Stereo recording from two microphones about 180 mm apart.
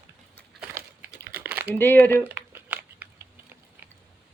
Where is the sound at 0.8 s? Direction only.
10° right (ahead or behind).